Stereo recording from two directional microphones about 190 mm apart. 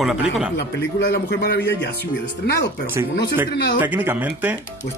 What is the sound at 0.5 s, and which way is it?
Speech, 60° left (ahead or behind).